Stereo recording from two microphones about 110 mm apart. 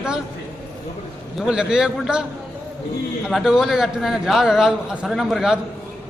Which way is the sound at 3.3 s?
Centre (ahead or behind).